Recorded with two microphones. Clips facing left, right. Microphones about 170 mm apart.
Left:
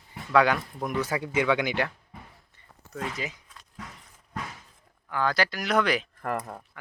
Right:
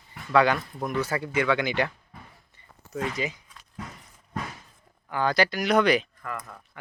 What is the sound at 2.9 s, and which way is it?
Speech, centre (ahead or behind).